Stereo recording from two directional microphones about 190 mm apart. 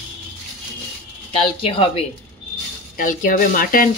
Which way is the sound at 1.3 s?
30° left (ahead or behind).